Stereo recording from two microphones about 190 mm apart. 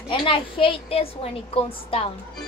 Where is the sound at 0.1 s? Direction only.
25° left (ahead or behind).